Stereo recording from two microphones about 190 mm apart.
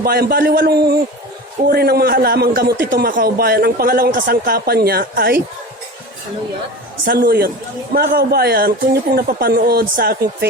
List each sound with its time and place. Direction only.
0.0 s a man's voice: 55° right (ahead or behind)
7.0 s speech: 50° right (ahead or behind)